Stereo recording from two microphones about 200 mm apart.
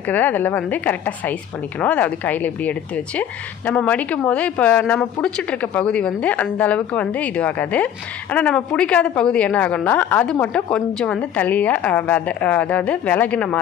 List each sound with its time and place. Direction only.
0.1 s a woman's voice: 10° left (ahead or behind)